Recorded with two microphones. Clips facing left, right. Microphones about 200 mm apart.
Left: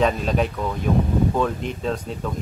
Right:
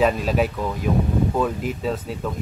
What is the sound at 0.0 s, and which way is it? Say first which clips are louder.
Speech: right 1 dB; 5° right (ahead or behind).